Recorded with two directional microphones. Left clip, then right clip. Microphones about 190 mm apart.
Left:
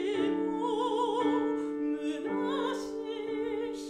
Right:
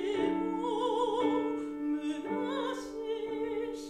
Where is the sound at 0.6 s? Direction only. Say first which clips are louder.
Left 1 dB; 40° left (ahead or behind).